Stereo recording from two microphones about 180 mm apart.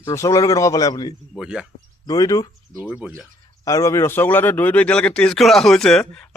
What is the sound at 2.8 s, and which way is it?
Speech, 5° right (ahead or behind).